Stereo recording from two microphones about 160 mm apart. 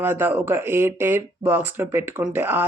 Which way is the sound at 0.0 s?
15° right (ahead or behind).